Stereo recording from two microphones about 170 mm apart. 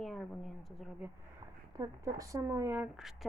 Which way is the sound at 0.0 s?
5° left (ahead or behind).